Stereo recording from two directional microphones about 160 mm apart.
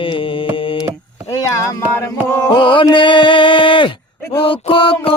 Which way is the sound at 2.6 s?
30° left (ahead or behind).